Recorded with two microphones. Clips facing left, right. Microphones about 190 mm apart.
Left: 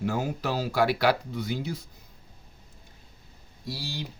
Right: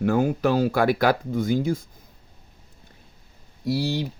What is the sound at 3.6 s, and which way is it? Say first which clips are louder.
Speech: right 12 dB; 65° right (ahead or behind).